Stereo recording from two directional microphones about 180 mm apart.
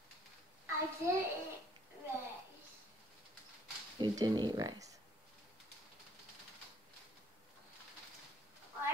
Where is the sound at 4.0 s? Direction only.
25° right (ahead or behind).